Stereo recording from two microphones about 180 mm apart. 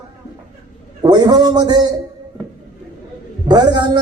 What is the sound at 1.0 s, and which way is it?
Speech, 20° right (ahead or behind).